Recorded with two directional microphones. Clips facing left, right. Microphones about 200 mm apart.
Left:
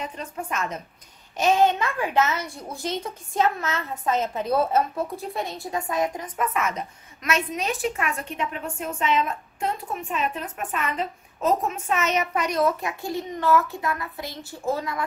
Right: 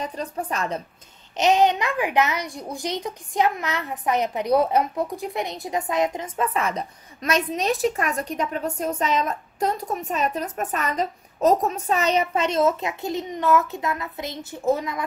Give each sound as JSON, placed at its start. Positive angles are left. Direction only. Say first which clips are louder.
{"t": 0.0, "sound": "a woman's voice", "louder": "right 4 dB", "side_deg": -35}
{"t": 1.3, "sound": "a child's voice", "louder": "right 1 dB", "side_deg": -20}